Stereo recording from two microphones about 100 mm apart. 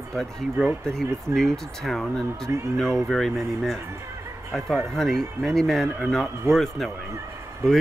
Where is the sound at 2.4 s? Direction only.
30° right (ahead or behind).